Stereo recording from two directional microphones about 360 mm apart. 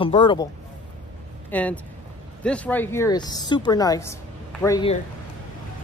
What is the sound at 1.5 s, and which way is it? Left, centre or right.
A woman's voice, centre.